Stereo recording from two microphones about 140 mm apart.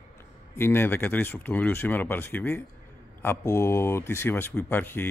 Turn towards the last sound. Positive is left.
turn(degrees=15)  # may be behind; listen again after turning